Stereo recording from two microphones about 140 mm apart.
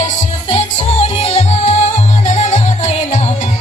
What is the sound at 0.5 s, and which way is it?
Music, 50° left (ahead or behind).